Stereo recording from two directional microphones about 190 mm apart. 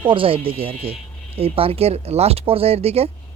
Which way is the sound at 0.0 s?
25° right (ahead or behind).